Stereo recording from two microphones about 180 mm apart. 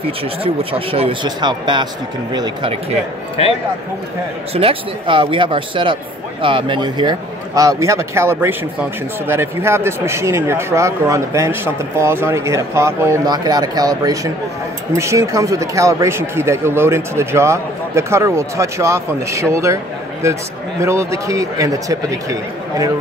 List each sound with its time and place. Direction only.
0.0 s speech: 30° right (ahead or behind)
4.6 s speech: 30° right (ahead or behind)